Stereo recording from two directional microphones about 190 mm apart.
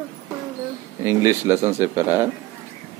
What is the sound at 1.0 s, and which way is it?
Speech, 15° right (ahead or behind).